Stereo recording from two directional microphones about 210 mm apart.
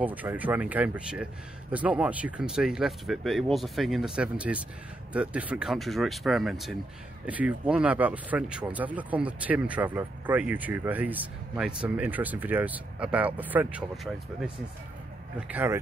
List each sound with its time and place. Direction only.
0.0 s speech: 10° right (ahead or behind)